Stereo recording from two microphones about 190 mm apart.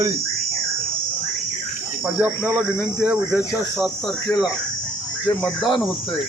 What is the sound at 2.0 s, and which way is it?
Speech, 10° right (ahead or behind).